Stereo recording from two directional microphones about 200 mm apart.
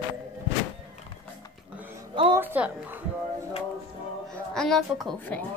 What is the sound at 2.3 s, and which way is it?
Speech, 10° right (ahead or behind).